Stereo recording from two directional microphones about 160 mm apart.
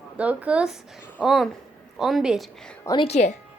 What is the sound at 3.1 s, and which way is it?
Speech, 45° left (ahead or behind).